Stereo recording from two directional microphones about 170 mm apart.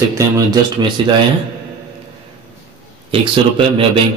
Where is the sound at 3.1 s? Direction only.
30° right (ahead or behind).